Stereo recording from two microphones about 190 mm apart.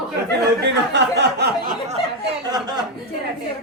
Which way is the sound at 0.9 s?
65° right (ahead or behind).